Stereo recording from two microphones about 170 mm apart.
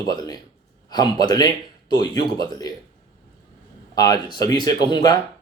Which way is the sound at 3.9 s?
25° left (ahead or behind).